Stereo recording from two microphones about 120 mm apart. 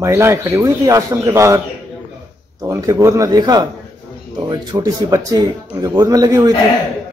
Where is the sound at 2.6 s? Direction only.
25° right (ahead or behind).